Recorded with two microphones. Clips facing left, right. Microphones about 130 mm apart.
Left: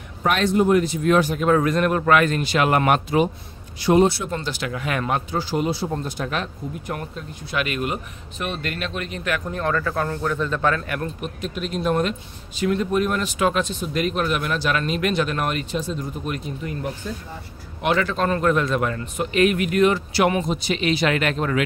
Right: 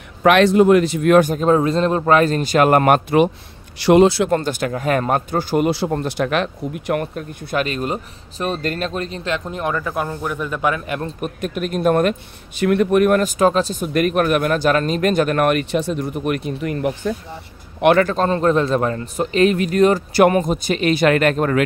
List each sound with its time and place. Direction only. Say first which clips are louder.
0.2 s speech: right 7 dB; 85° right; by 1.3 s 60° right (ahead or behind)
1.3 s a man's voice: right 3 dB; 30° right (ahead or behind); by 3.2 s 45° right (ahead or behind)
3.7 s a man's voice: right 5 dB; 75° right (ahead or behind)
4.3 s speech: right 8 dB; 50° right (ahead or behind)
5.7 s speech: right 5 dB; 70° right (ahead or behind)
7.5 s speech: right 4 dB; 35° right (ahead or behind); by 11.0 s 15° right (ahead or behind)
11.1 s speech: right 5 dB; 50° right (ahead or behind)
13.2 s a man's voice: right 5 dB; 40° right (ahead or behind)
13.9 s speech: right 6 dB; 55° right (ahead or behind)
17.8 s speech: right 8 dB; 55° right (ahead or behind)
18.1 s a man's voice: right 4 dB; 30° right (ahead or behind); by 21.6 s 50° right (ahead or behind)